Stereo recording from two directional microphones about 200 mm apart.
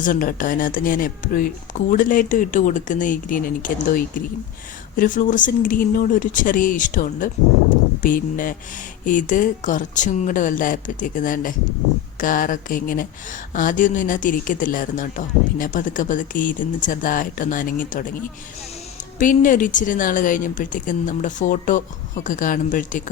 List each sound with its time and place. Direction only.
0.0 s speech: 45° left (ahead or behind)
19.2 s speech: 40° left (ahead or behind)